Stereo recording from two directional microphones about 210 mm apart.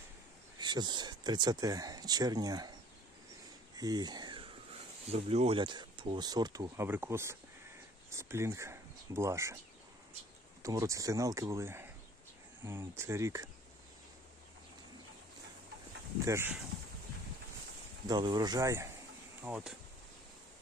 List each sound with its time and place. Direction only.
0.6 s speech: 20° right (ahead or behind)
3.7 s a sound: 20° right (ahead or behind)
5.0 s speech: 30° right (ahead or behind); by 9.6 s 15° right (ahead or behind)
10.6 s speech: 15° right (ahead or behind)
16.3 s speech: 10° right (ahead or behind)
18.0 s speech: 20° right (ahead or behind)